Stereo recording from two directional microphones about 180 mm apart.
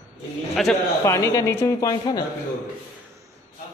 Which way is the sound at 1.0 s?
15° left (ahead or behind).